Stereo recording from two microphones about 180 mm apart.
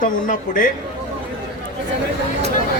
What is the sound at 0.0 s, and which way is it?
Speech, 50° left (ahead or behind).